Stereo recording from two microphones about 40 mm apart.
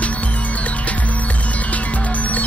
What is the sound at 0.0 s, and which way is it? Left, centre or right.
Music, left.